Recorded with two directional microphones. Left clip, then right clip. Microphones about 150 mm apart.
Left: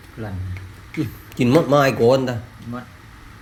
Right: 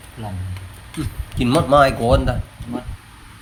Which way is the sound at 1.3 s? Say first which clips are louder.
Right 1 dB; 10° right (ahead or behind).